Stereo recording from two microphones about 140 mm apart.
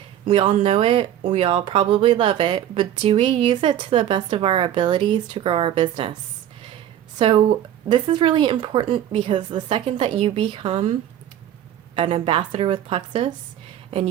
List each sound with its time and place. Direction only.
0.3 s speech: 35° right (ahead or behind)
7.2 s speech: 35° right (ahead or behind)
11.9 s speech: 40° right (ahead or behind)